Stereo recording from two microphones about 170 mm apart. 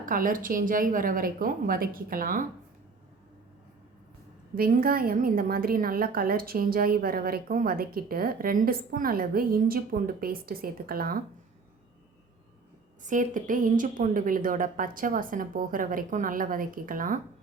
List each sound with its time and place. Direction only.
0.0 s a woman's voice: 55° right (ahead or behind)
4.5 s a woman's voice: 60° right (ahead or behind)
13.0 s a woman's voice: 50° right (ahead or behind)